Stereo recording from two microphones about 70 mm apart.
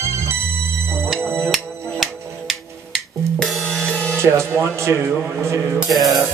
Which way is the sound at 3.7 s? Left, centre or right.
Centre.